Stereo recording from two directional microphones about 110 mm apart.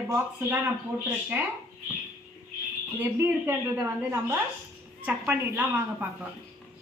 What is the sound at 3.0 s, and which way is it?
Speech, 20° right (ahead or behind).